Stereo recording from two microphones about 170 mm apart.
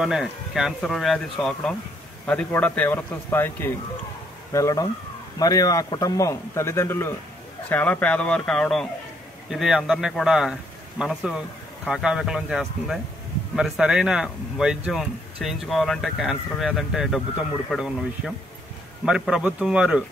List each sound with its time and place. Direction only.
0.0 s a man's voice: centre (ahead or behind)